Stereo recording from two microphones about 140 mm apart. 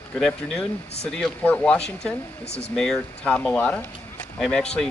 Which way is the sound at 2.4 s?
50° left (ahead or behind).